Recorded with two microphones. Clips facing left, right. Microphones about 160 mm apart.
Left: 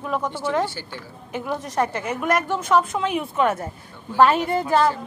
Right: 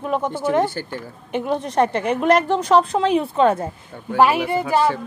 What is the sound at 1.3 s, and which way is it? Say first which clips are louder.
A woman's voice: right 5 dB; 25° right (ahead or behind).